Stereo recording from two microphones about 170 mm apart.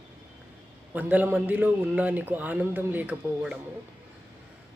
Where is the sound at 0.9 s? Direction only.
10° right (ahead or behind).